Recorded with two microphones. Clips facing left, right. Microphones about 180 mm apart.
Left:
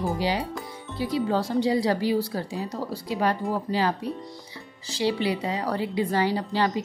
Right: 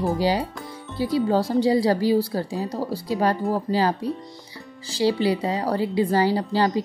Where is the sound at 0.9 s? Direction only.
35° right (ahead or behind).